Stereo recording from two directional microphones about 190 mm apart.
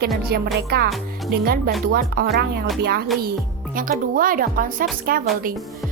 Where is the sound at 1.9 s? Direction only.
55° right (ahead or behind).